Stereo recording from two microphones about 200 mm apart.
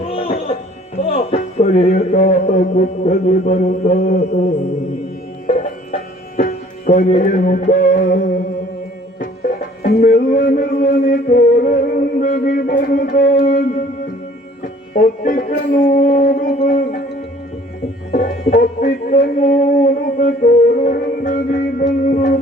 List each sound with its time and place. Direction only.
0.0 s music: 30° left (ahead or behind)
1.0 s a sound: 30° left (ahead or behind)
2.0 s mantra: 30° left (ahead or behind)
5.5 s music: 40° left (ahead or behind)
18.1 s music: 45° left (ahead or behind)